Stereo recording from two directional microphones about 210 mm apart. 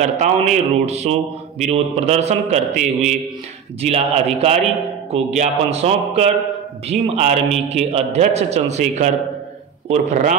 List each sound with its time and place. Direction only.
0.0 s a man's voice: 35° right (ahead or behind)